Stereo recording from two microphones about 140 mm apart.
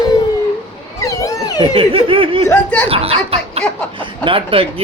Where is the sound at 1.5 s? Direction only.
40° right (ahead or behind).